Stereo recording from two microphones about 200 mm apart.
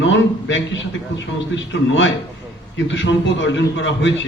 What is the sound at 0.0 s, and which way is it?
A man's voice, 65° left (ahead or behind).